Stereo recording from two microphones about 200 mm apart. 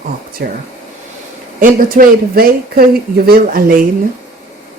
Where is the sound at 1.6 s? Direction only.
45° right (ahead or behind).